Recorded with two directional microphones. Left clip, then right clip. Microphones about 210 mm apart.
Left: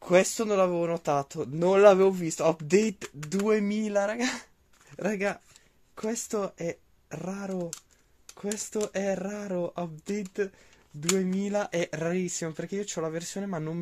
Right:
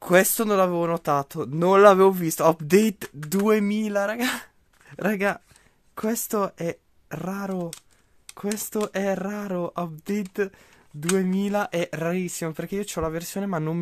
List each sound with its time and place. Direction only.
0.0 s speech: 40° right (ahead or behind)